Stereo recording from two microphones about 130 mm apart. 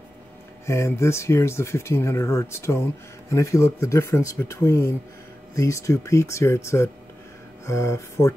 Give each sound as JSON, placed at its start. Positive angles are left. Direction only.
{"t": 0.7, "sound": "speech", "side_deg": 20}